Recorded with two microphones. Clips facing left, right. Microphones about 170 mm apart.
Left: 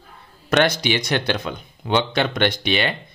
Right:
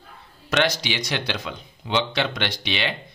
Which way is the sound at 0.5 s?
55° left (ahead or behind).